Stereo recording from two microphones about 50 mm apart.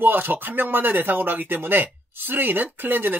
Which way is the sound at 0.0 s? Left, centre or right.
Right.